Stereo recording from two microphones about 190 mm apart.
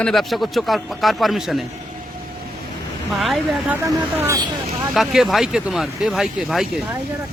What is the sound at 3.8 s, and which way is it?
Speech, 15° right (ahead or behind).